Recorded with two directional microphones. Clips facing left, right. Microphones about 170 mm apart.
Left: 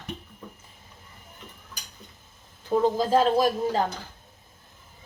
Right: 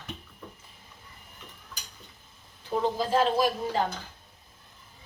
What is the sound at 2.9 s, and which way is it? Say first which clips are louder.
Speech: left 4 dB; 45° left (ahead or behind).